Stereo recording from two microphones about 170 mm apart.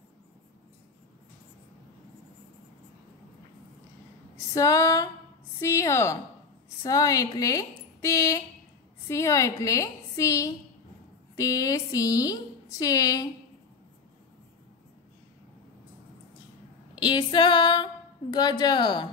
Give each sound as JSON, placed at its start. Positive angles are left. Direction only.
{"t": 4.6, "sound": "a woman's voice", "side_deg": 20}
{"t": 17.0, "sound": "a woman's voice", "side_deg": 30}